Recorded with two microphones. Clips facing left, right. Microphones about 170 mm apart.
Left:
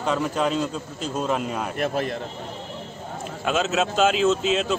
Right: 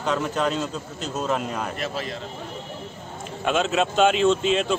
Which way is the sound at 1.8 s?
55° left (ahead or behind).